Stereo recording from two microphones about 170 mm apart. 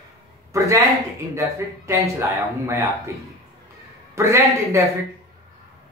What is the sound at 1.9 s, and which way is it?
Speech, 15° right (ahead or behind).